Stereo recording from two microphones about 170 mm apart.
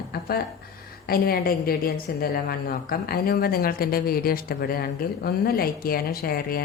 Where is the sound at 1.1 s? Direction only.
65° left (ahead or behind).